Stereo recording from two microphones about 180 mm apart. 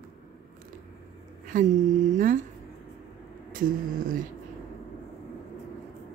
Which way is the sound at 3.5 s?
50° right (ahead or behind).